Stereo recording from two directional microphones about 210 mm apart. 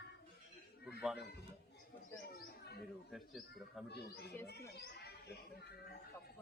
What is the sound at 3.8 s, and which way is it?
Speech, 50° left (ahead or behind).